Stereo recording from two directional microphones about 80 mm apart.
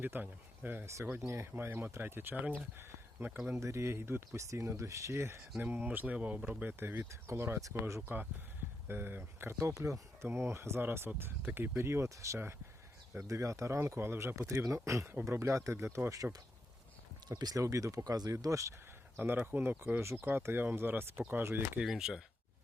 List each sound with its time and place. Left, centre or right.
0.0 s speech: right
3.3 s speech: centre
3.6 s speech: right
5.5 s speech: right
8.0 s speech: right
9.7 s speech: right
17.2 s speech: right
17.6 s speech: right
19.2 s speech: right
21.8 s speech: centre